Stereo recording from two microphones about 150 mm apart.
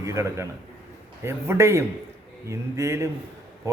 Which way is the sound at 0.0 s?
20° right (ahead or behind).